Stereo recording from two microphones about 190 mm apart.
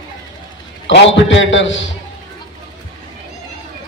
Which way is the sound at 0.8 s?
75° left (ahead or behind).